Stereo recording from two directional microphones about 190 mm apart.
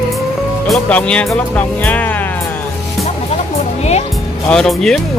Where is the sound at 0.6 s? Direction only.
5° left (ahead or behind).